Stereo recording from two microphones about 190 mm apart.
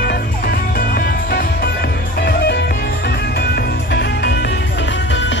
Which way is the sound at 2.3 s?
55° left (ahead or behind).